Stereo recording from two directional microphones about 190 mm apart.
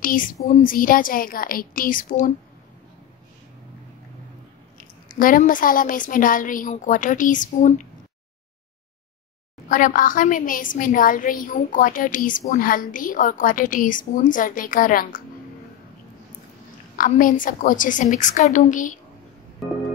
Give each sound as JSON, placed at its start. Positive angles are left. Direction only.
{"t": 0.0, "sound": "a sound", "side_deg": 45}
{"t": 0.5, "sound": "a woman's voice", "side_deg": 45}
{"t": 4.7, "sound": "a woman's voice", "side_deg": 45}
{"t": 9.7, "sound": "a woman's voice", "side_deg": 45}
{"t": 16.9, "sound": "a woman's voice", "side_deg": 45}